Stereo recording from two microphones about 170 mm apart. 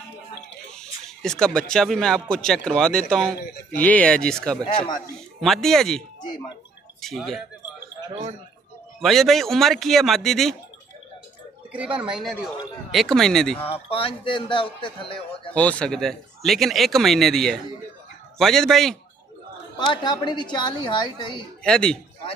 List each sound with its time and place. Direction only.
0.7 s speech: 5° left (ahead or behind)
8.1 s speech: 40° right (ahead or behind)
9.0 s speech: centre (ahead or behind)
11.7 s speech: 5° right (ahead or behind)
13.7 s a man's voice: 35° left (ahead or behind)
15.5 s speech: 10° left (ahead or behind)
19.9 s a woman's voice: 25° left (ahead or behind)
21.6 s speech: 5° left (ahead or behind)